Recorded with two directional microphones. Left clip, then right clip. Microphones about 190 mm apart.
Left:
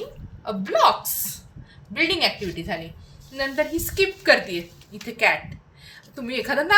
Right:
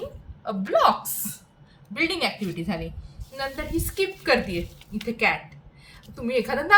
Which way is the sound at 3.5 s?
60° left (ahead or behind).